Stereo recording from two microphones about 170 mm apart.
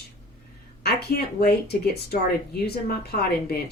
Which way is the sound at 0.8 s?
70° left (ahead or behind).